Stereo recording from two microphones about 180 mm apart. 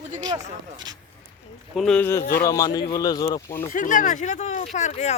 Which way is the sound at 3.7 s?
45° left (ahead or behind).